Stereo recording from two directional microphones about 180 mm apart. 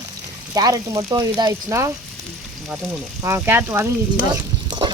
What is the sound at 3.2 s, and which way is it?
Speech, 15° right (ahead or behind).